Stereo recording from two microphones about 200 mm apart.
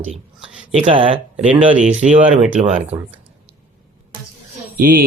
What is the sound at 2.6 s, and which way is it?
Speech, 35° right (ahead or behind).